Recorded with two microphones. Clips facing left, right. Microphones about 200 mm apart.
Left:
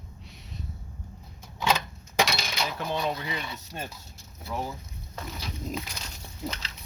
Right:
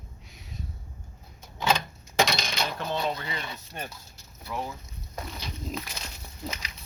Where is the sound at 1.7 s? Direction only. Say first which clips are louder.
Right 2 dB; 5° left (ahead or behind).